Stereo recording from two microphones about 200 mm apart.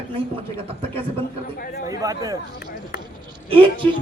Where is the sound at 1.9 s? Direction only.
15° right (ahead or behind).